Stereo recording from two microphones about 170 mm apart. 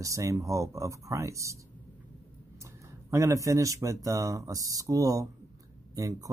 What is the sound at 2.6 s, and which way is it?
Speech, 15° right (ahead or behind).